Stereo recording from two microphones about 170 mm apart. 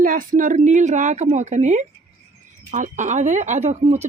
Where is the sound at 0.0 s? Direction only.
50° right (ahead or behind).